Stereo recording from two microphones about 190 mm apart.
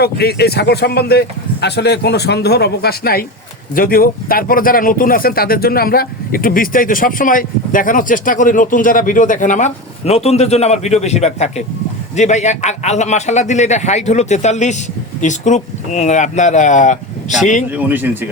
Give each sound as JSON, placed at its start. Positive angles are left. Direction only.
{"t": 0.0, "sound": "a man's voice", "side_deg": 60}
{"t": 17.7, "sound": "speech", "side_deg": -10}